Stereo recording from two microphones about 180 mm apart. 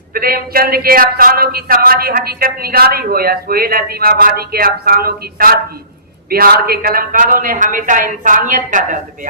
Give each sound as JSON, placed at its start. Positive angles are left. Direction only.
{"t": 0.1, "sound": "a woman's voice", "side_deg": -55}